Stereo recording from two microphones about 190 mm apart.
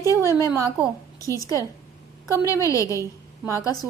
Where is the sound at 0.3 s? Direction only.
15° left (ahead or behind).